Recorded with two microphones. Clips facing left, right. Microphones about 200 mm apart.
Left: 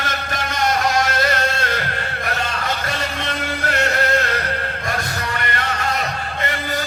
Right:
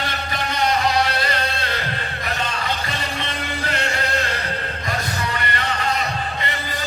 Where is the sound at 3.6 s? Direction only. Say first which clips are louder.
Left 6 dB; 50° left (ahead or behind).